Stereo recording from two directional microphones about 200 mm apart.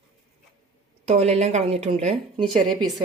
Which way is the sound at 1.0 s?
30° right (ahead or behind).